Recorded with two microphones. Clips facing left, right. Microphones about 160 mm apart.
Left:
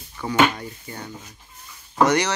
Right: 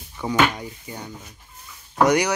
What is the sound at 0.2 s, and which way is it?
Speech, 10° right (ahead or behind).